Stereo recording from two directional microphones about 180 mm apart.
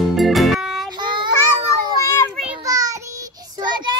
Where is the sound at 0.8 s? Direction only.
25° right (ahead or behind).